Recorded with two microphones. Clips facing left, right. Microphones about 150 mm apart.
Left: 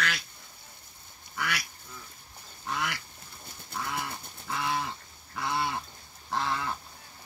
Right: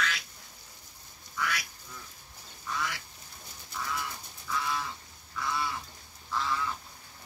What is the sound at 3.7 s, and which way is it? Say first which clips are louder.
Livestock: left 2 dB; 60° left (ahead or behind).